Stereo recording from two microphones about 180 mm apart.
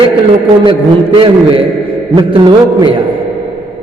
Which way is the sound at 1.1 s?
30° right (ahead or behind).